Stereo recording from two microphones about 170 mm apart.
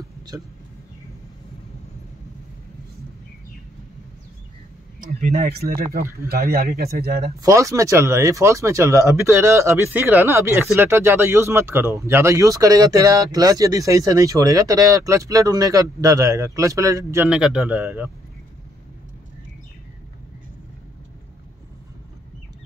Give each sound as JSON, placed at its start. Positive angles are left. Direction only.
{"t": 5.0, "sound": "speech", "side_deg": -45}
{"t": 5.5, "sound": "speech", "side_deg": -65}
{"t": 7.3, "sound": "speech", "side_deg": -20}
{"t": 17.3, "sound": "speech", "side_deg": -5}